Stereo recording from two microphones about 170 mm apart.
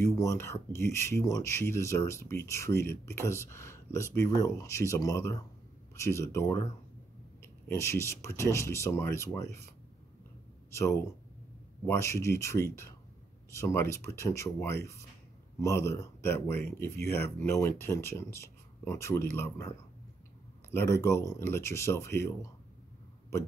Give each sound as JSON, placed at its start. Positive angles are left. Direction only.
{"t": 0.0, "sound": "speech", "side_deg": 15}
{"t": 10.7, "sound": "speech", "side_deg": 15}
{"t": 20.7, "sound": "speech", "side_deg": 15}